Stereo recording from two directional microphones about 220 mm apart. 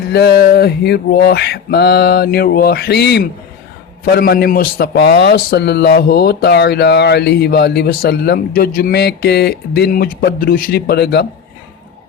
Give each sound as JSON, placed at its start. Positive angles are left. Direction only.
{"t": 0.1, "sound": "a man's voice", "side_deg": 50}